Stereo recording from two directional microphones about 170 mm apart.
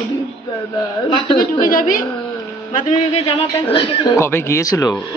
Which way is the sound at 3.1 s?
35° left (ahead or behind).